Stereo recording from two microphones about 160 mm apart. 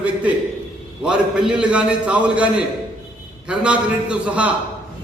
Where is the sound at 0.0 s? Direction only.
10° right (ahead or behind).